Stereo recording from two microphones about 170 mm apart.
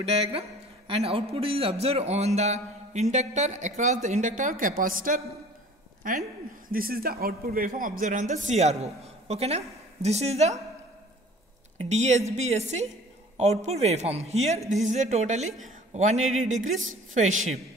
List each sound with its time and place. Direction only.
0.0 s a man's voice: 35° right (ahead or behind); by 5.2 s 55° right (ahead or behind)
6.7 s a man's voice: 60° right (ahead or behind); by 10.5 s 40° right (ahead or behind)
11.8 s a man's voice: 40° right (ahead or behind)